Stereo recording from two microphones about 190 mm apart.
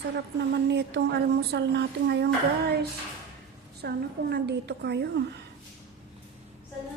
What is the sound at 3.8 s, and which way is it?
A woman's voice, 60° right (ahead or behind).